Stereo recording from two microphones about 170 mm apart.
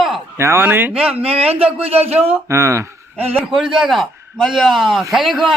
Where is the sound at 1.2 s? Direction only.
35° right (ahead or behind).